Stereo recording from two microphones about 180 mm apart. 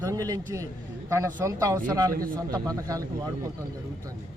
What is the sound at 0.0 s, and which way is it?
Speech, 20° right (ahead or behind).